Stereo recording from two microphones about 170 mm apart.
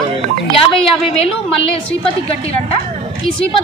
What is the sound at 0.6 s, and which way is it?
A woman's voice, 35° left (ahead or behind).